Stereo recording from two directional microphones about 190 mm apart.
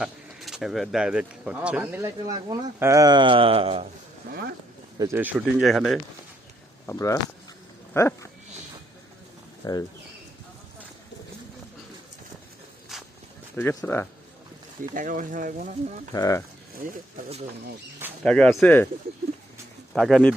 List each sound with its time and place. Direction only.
0.0 s speech: centre (ahead or behind); by 3.8 s 30° right (ahead or behind)
4.3 s speech: 55° right (ahead or behind)
4.9 s speech: 15° right (ahead or behind)
6.8 s speech: 15° left (ahead or behind)
9.6 s speech: 20° left (ahead or behind)
12.9 s walk: centre (ahead or behind)
13.6 s speech: 15° left (ahead or behind)
14.9 s speech: 45° right (ahead or behind)
16.1 s speech: 20° left (ahead or behind)
18.2 s speech: 5° left (ahead or behind)
19.9 s speech: centre (ahead or behind)